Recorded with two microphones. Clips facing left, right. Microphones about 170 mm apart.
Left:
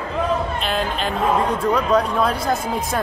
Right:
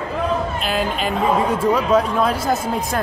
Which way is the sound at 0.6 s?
5° right (ahead or behind).